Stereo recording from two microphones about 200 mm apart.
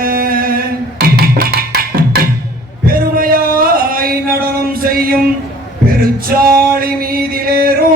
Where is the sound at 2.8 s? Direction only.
45° right (ahead or behind).